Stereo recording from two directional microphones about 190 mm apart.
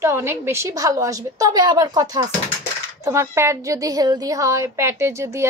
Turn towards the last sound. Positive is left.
turn(degrees=-15)  # may be behind; listen again after turning